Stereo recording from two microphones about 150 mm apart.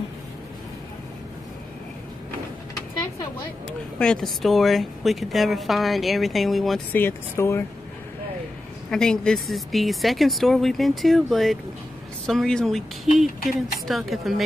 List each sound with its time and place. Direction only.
4.0 s a woman's voice: 5° left (ahead or behind)
6.9 s speech: 15° left (ahead or behind)
8.9 s a woman's voice: 5° left (ahead or behind)